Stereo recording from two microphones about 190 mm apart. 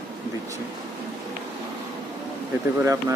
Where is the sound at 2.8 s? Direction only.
15° right (ahead or behind).